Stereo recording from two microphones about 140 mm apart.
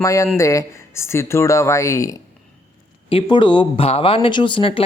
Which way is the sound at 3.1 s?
40° left (ahead or behind).